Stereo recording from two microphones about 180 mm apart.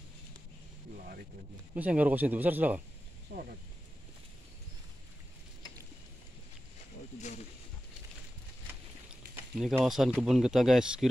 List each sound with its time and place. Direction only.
1.8 s speech: 10° right (ahead or behind)
3.3 s speech: 55° right (ahead or behind)
9.3 s speech: centre (ahead or behind)